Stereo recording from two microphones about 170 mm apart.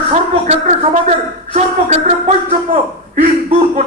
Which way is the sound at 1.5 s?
45° right (ahead or behind).